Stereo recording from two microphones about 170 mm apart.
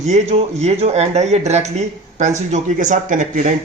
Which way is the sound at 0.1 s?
40° right (ahead or behind).